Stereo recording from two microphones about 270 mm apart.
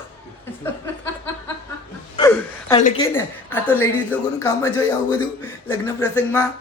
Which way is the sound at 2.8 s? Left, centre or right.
Left.